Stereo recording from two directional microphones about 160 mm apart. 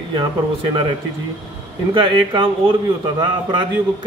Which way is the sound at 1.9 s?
30° right (ahead or behind).